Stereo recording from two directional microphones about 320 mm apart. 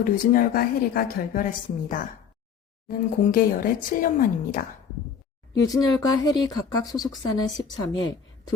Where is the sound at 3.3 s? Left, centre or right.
Left.